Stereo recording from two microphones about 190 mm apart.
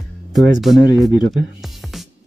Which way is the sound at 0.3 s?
Centre (ahead or behind).